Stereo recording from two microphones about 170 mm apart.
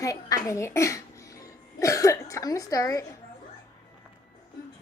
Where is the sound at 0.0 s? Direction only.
20° left (ahead or behind).